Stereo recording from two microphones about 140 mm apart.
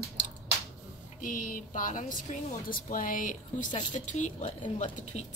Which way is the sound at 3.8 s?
60° left (ahead or behind).